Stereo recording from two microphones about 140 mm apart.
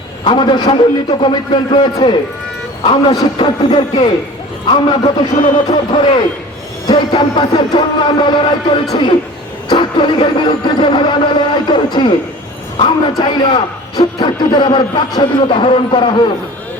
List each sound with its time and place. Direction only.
0.3 s a man's voice: 35° left (ahead or behind)